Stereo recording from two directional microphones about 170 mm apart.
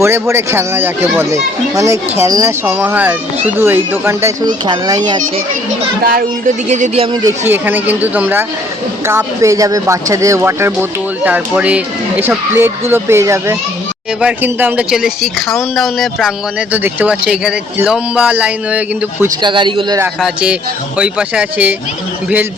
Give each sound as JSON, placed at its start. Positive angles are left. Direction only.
{"t": 0.0, "sound": "speech", "side_deg": -15}
{"t": 6.0, "sound": "speech", "side_deg": -55}
{"t": 6.7, "sound": "speech", "side_deg": -45}
{"t": 7.1, "sound": "speech", "side_deg": -25}
{"t": 7.4, "sound": "speech", "side_deg": -10}
{"t": 19.4, "sound": "speech", "side_deg": -25}
{"t": 20.1, "sound": "speech", "side_deg": -5}